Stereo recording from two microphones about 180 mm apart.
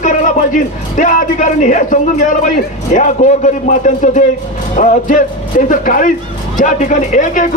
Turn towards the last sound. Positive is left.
turn(degrees=45)  # may be behind; listen again after turning